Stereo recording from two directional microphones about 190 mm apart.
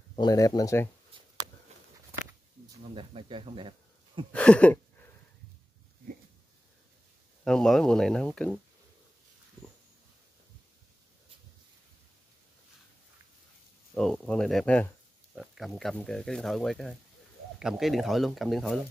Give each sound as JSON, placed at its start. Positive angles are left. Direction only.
{"t": 0.1, "sound": "speech", "side_deg": 20}
{"t": 1.1, "sound": "a sound", "side_deg": -25}
{"t": 2.8, "sound": "speech", "side_deg": -30}
{"t": 4.3, "sound": "a sound", "side_deg": 5}
{"t": 7.4, "sound": "speech", "side_deg": 0}
{"t": 13.9, "sound": "speech", "side_deg": 5}